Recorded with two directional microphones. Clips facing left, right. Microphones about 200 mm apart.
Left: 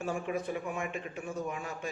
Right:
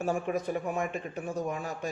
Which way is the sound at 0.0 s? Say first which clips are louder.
Right 4 dB; 40° right (ahead or behind).